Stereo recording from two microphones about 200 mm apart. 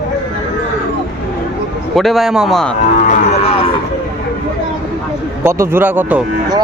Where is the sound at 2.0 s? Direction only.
Centre (ahead or behind).